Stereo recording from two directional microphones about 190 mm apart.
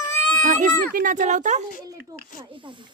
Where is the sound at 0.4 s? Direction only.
40° right (ahead or behind).